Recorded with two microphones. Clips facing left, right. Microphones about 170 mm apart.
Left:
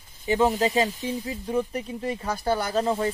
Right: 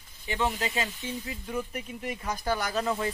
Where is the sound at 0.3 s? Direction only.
40° left (ahead or behind).